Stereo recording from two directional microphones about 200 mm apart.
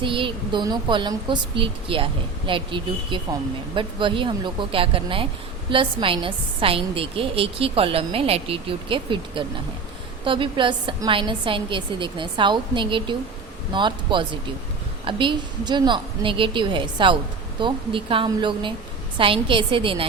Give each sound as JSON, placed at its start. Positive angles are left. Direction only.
{"t": 0.0, "sound": "a woman's voice", "side_deg": -25}